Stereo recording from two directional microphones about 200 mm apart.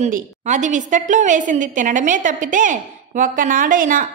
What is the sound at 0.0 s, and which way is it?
A woman's voice, 35° right (ahead or behind).